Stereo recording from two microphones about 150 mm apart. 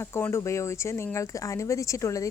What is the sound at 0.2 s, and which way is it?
Speech, 20° left (ahead or behind).